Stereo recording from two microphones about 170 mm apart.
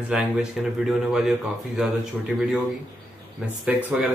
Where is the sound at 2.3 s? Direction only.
Centre (ahead or behind).